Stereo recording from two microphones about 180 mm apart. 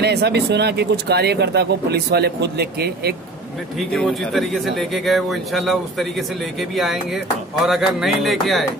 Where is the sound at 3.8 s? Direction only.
Centre (ahead or behind).